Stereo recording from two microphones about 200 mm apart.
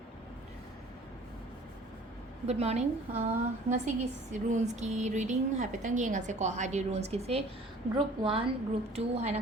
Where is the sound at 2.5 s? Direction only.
35° right (ahead or behind).